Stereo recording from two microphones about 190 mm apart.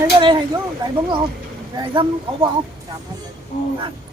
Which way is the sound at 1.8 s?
25° right (ahead or behind).